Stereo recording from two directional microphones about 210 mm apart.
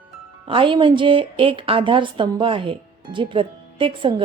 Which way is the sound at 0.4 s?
25° right (ahead or behind).